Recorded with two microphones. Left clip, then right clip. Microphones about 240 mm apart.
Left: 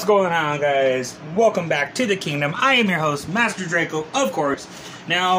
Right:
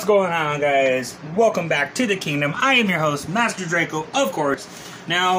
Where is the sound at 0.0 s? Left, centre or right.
Left.